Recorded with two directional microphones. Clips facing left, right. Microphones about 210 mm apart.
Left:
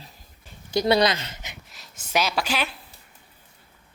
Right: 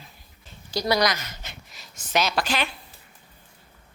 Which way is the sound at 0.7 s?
25° left (ahead or behind).